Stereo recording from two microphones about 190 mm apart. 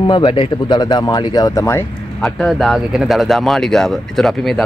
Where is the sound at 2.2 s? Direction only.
Centre (ahead or behind).